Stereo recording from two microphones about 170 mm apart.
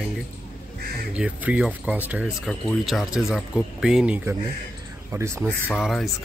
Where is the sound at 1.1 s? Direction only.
10° right (ahead or behind).